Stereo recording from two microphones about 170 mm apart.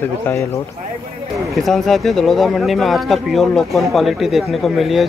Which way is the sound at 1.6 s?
Centre (ahead or behind).